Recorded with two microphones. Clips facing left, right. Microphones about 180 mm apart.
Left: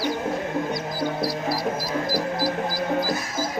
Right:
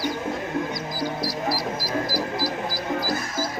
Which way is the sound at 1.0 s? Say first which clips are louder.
Left 1 dB; 55° left (ahead or behind).